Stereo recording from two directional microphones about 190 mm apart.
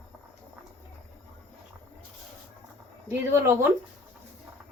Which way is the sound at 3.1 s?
15° right (ahead or behind).